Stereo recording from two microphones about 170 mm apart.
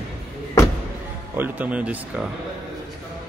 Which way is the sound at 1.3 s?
10° right (ahead or behind).